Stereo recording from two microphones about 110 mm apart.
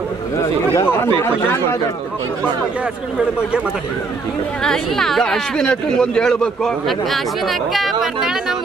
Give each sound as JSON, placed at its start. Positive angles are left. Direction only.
{"t": 0.7, "sound": "speech", "side_deg": 20}
{"t": 4.6, "sound": "speech", "side_deg": 5}